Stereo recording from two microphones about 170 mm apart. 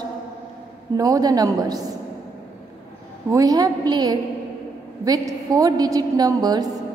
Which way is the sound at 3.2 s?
20° right (ahead or behind).